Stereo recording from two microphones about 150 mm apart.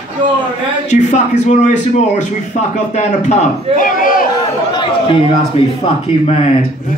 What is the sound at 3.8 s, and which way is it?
Speech, 65° left (ahead or behind).